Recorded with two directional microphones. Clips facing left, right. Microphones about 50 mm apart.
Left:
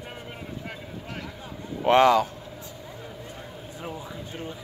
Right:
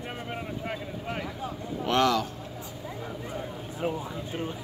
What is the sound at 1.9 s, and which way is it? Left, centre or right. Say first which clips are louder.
Speech: left 6 dB; left.